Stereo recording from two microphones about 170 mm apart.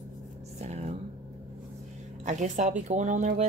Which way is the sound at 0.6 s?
40° right (ahead or behind).